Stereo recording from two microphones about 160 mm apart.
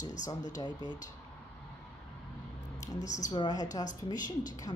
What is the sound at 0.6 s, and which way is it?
Speech, 25° left (ahead or behind).